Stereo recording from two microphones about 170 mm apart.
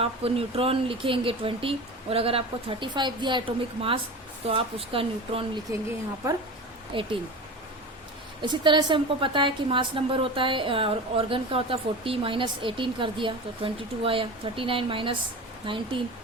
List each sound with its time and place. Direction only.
0.0 s a woman's voice: 35° right (ahead or behind)
6.9 s speech: 30° right (ahead or behind)
8.4 s a woman's voice: 30° right (ahead or behind)